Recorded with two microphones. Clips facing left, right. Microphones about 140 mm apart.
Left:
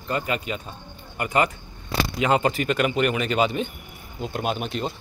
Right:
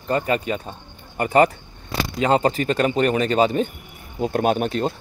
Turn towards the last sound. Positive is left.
turn(degrees=-45)  # may be behind; listen again after turning